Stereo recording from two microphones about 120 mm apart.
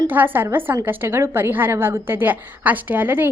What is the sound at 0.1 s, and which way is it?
A woman's voice, 15° right (ahead or behind).